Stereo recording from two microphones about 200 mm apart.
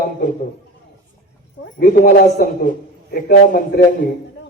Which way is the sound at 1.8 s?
45° left (ahead or behind).